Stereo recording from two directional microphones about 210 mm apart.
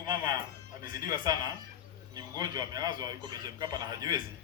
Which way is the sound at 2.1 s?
20° right (ahead or behind).